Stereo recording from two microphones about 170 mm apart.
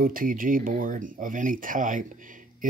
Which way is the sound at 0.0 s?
55° right (ahead or behind).